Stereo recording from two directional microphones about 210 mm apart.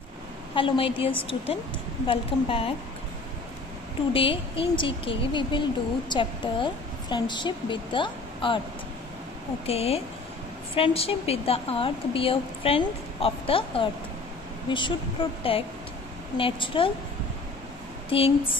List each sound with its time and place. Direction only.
0.6 s speech: 25° left (ahead or behind)
4.1 s speech: 25° left (ahead or behind)
9.7 s speech: 30° left (ahead or behind)
18.1 s speech: 25° left (ahead or behind)